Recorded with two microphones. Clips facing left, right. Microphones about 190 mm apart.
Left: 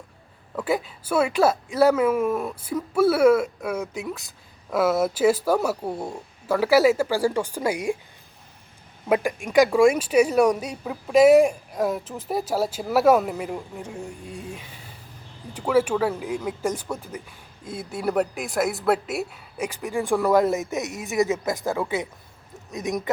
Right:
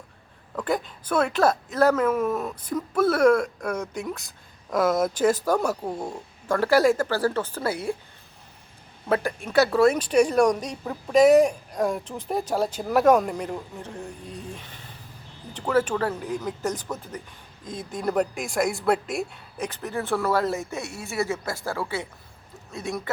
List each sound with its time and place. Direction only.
0.5 s a woman's voice: 5° left (ahead or behind)
9.0 s a woman's voice: 15° left (ahead or behind)